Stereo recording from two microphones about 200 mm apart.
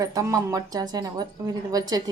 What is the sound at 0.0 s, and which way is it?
A woman's voice, 15° right (ahead or behind).